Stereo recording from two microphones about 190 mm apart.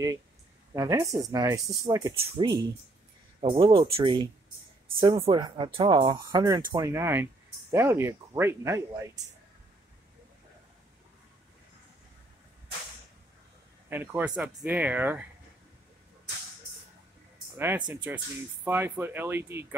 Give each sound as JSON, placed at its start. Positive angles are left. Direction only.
{"t": 0.7, "sound": "speech", "side_deg": -15}
{"t": 13.8, "sound": "speech", "side_deg": -10}
{"t": 17.6, "sound": "speech", "side_deg": -10}